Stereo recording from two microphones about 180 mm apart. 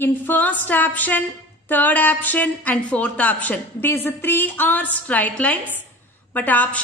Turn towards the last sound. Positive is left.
turn(degrees=10)  # may be behind; listen again after turning